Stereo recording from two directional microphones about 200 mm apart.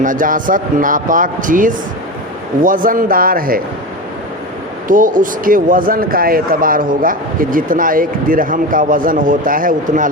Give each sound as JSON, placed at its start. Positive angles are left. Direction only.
{"t": 0.0, "sound": "speech", "side_deg": -40}
{"t": 4.9, "sound": "speech", "side_deg": -40}